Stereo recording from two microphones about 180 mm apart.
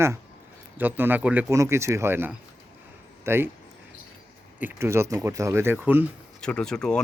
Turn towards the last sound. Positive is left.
turn(degrees=5)  # may be behind; listen again after turning